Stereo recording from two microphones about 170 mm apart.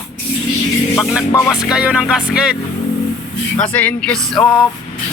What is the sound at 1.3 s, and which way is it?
Speech, 20° left (ahead or behind).